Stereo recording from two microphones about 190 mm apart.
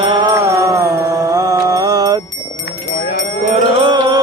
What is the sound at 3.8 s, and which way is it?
Music, 25° right (ahead or behind).